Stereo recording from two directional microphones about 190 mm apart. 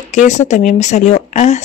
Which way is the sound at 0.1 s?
35° left (ahead or behind).